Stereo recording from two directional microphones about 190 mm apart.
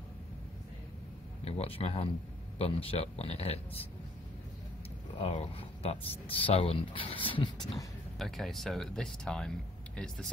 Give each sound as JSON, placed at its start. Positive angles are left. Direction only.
{"t": 1.4, "sound": "speech", "side_deg": 30}
{"t": 5.2, "sound": "speech", "side_deg": 30}
{"t": 7.7, "sound": "speech", "side_deg": 0}